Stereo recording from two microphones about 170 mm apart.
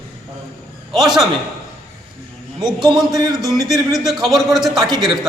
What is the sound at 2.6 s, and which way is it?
Speech, 25° right (ahead or behind).